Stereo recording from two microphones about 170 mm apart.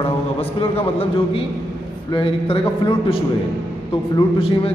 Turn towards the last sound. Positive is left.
turn(degrees=30)  # may be behind; listen again after turning